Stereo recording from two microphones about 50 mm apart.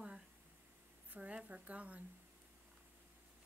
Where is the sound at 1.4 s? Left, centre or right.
Right.